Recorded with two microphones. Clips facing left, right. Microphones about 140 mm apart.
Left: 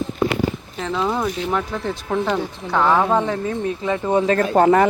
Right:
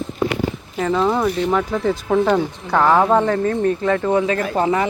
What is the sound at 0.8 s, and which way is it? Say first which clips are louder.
Speech: right 5 dB; centre (ahead or behind).